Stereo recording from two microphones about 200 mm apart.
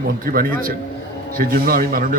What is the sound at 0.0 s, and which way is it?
A man's voice, 45° right (ahead or behind).